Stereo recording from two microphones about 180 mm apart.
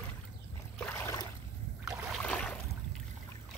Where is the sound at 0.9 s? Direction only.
15° left (ahead or behind).